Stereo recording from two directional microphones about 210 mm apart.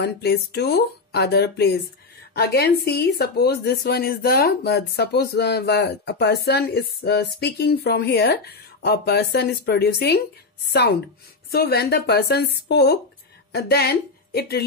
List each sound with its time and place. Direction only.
0.0 s a woman's voice: 50° left (ahead or behind)
11.5 s a woman's voice: 50° left (ahead or behind)